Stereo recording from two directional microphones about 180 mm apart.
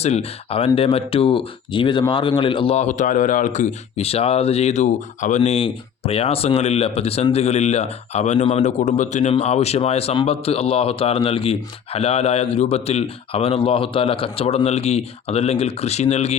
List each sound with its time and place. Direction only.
0.0 s speech: 35° left (ahead or behind)